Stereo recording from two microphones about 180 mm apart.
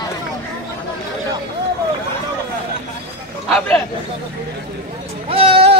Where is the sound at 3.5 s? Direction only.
5° left (ahead or behind).